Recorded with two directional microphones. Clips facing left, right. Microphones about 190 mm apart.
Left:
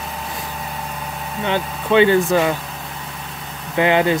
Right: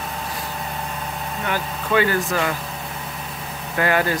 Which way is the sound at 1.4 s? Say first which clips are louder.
Left 5 dB; 25° left (ahead or behind).